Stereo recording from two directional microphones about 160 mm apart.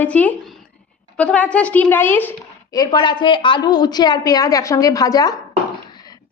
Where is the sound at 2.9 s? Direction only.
30° left (ahead or behind).